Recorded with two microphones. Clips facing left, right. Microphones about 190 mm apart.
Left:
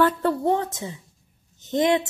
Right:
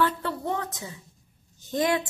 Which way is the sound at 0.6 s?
25° left (ahead or behind).